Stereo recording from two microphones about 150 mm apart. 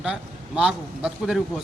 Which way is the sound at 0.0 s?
5° right (ahead or behind).